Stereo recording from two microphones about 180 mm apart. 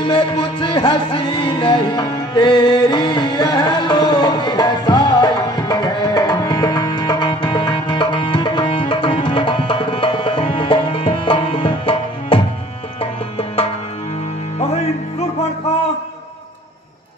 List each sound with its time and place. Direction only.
0.0 s music: 25° left (ahead or behind)